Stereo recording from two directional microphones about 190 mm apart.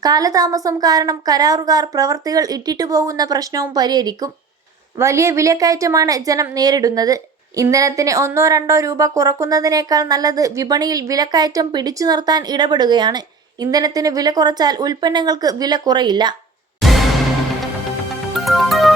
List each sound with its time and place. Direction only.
0.0 s a woman's voice: 20° right (ahead or behind)
16.8 s music: centre (ahead or behind)
18.3 s music: centre (ahead or behind)